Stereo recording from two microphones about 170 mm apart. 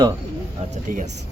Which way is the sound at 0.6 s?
40° right (ahead or behind).